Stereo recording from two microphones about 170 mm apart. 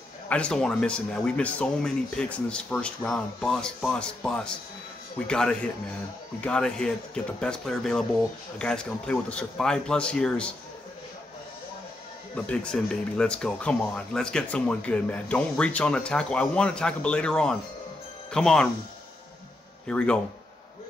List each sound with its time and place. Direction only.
0.3 s speech: 5° left (ahead or behind)
12.4 s speech: 5° left (ahead or behind)
19.9 s speech: 5° left (ahead or behind)